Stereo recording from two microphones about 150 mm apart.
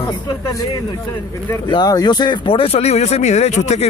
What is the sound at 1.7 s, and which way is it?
Speech, 25° left (ahead or behind).